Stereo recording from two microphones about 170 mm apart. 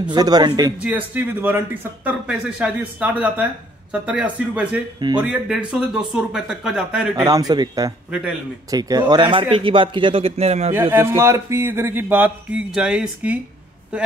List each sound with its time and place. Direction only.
0.0 s speech: 25° right (ahead or behind)
0.8 s speech: 10° right (ahead or behind)
7.2 s speech: 20° right (ahead or behind); by 10.7 s 40° right (ahead or behind)
10.7 s speech: 15° right (ahead or behind)